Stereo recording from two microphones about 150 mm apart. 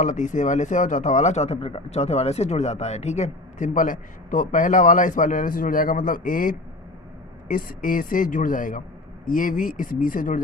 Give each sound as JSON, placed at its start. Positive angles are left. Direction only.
{"t": 0.0, "sound": "a man's voice", "side_deg": 55}